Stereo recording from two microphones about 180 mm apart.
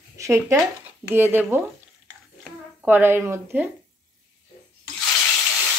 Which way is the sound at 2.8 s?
10° right (ahead or behind).